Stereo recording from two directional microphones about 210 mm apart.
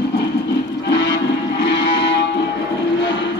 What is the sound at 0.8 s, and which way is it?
Music, 55° left (ahead or behind).